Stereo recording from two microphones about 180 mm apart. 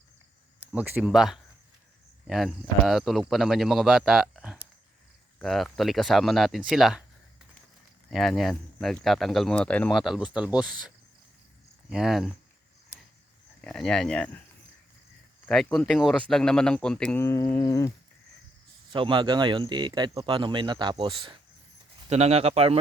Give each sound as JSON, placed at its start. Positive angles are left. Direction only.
{"t": 0.6, "sound": "speech", "side_deg": -10}
{"t": 8.1, "sound": "speech", "side_deg": 0}
{"t": 11.9, "sound": "speech", "side_deg": -5}
{"t": 13.6, "sound": "speech", "side_deg": 5}
{"t": 15.4, "sound": "speech", "side_deg": 5}
{"t": 18.9, "sound": "speech", "side_deg": -25}
{"t": 22.1, "sound": "speech", "side_deg": -35}